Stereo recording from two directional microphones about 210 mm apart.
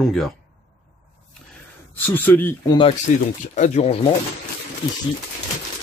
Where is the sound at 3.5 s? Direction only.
35° left (ahead or behind).